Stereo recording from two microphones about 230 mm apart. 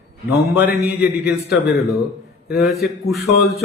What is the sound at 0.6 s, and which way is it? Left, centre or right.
Speech, centre.